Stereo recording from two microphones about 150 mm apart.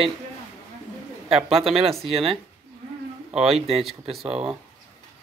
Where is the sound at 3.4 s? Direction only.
40° right (ahead or behind).